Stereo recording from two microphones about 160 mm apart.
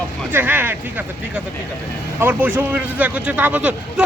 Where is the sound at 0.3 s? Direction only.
10° right (ahead or behind).